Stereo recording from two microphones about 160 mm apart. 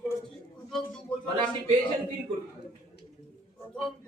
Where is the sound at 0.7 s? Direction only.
5° left (ahead or behind).